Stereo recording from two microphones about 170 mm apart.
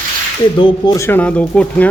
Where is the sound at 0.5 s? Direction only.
25° left (ahead or behind).